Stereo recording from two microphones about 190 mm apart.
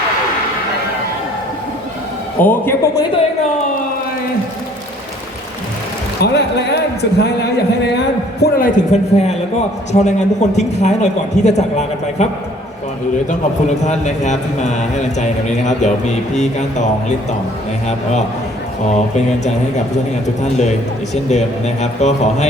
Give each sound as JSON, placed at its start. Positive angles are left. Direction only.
{"t": 2.4, "sound": "a man's voice", "side_deg": 10}
{"t": 6.2, "sound": "speech", "side_deg": 60}
{"t": 8.4, "sound": "a man's voice", "side_deg": 50}
{"t": 13.8, "sound": "a man's voice", "side_deg": 40}
{"t": 18.9, "sound": "a man's voice", "side_deg": 35}
{"t": 21.2, "sound": "a man's voice", "side_deg": 35}